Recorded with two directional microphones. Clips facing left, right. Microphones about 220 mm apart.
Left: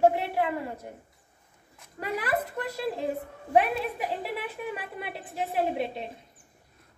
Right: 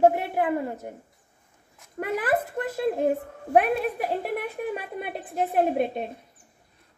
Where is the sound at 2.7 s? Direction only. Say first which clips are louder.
Right 9 dB; 50° right (ahead or behind).